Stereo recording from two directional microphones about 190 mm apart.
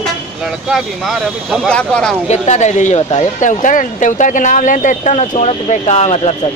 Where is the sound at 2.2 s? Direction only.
35° left (ahead or behind).